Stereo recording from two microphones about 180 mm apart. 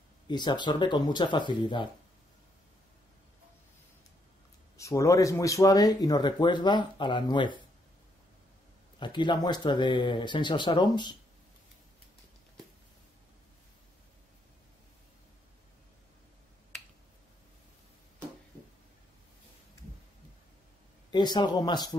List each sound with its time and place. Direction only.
0.3 s speech: 25° left (ahead or behind)
4.7 s speech: 15° left (ahead or behind)
9.0 s speech: 25° left (ahead or behind)
21.1 s speech: 25° left (ahead or behind)